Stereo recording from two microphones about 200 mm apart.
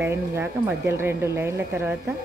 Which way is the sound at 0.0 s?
10° right (ahead or behind).